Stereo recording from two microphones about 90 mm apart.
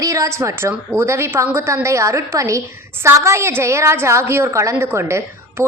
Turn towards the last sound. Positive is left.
turn(degrees=-30)  # may be behind; listen again after turning